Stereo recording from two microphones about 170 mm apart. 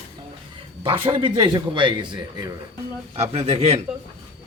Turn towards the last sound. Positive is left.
turn(degrees=-40)  # may be behind; listen again after turning